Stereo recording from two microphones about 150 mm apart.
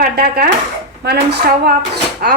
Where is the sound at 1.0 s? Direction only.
90° right.